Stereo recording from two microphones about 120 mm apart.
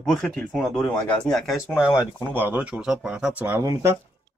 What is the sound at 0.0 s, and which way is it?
Speech, 5° left (ahead or behind).